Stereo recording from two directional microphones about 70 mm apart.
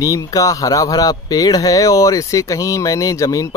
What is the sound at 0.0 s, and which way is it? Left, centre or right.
Speech, left.